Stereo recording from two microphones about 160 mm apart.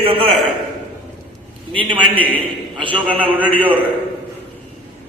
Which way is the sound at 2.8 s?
30° right (ahead or behind).